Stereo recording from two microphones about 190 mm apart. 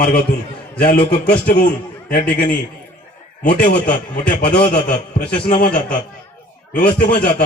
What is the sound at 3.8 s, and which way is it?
A man's voice, 45° left (ahead or behind).